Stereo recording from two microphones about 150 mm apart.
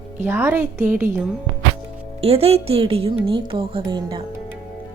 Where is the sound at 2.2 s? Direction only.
40° right (ahead or behind).